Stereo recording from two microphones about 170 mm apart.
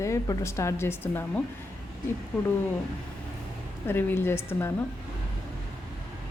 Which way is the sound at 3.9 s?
10° left (ahead or behind).